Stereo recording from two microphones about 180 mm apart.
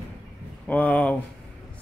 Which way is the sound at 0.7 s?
5° left (ahead or behind).